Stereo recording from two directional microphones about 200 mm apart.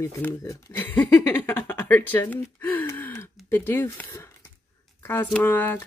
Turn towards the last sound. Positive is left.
turn(degrees=10)  # may be behind; listen again after turning